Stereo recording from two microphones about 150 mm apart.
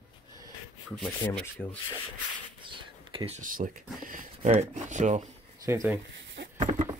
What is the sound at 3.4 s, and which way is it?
Speech, 65° right (ahead or behind).